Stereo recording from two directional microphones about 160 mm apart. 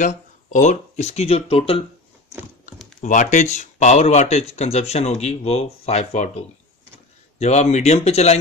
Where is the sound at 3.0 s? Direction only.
50° left (ahead or behind).